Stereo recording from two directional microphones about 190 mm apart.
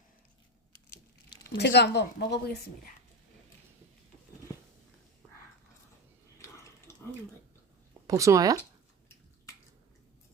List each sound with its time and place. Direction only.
1.5 s a woman's voice: 65° left (ahead or behind)
6.4 s a sound: 15° left (ahead or behind)
8.0 s speech: 15° right (ahead or behind)